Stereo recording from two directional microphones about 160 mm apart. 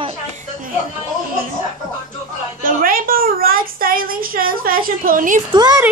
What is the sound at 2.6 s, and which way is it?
A woman's voice, 65° right (ahead or behind).